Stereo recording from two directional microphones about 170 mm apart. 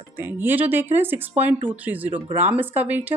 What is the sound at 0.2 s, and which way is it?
Speech, 10° right (ahead or behind).